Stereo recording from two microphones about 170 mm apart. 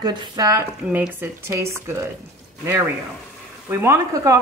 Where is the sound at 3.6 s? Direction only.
15° right (ahead or behind).